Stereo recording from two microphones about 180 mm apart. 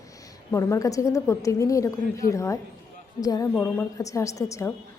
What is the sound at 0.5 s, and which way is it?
A woman's voice, 15° left (ahead or behind).